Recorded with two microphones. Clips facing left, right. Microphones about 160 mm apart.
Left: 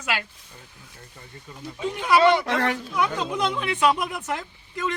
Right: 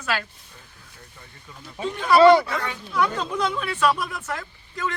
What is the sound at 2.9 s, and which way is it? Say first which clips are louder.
Speech: right 5 dB; 15° left (ahead or behind).